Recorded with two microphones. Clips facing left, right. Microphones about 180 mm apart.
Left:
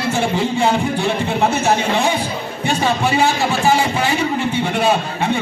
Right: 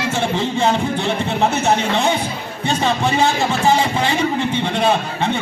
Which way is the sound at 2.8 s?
10° left (ahead or behind).